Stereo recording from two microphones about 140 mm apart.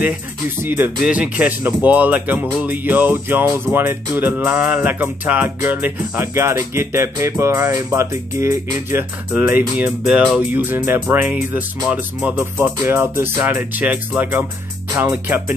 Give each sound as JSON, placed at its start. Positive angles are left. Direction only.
{"t": 0.6, "sound": "speech", "side_deg": -15}